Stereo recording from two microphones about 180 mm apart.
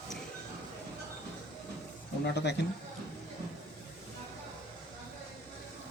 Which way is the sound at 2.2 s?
70° left (ahead or behind).